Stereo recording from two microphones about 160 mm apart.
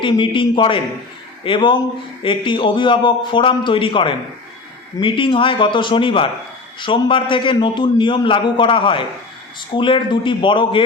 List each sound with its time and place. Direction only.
0.0 s a man's voice: 30° left (ahead or behind)